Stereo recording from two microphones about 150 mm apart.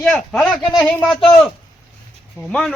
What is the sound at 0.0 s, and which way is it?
Speech, centre (ahead or behind).